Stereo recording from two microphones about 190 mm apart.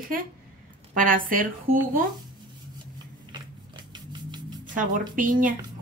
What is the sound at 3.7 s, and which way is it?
Music, 25° right (ahead or behind).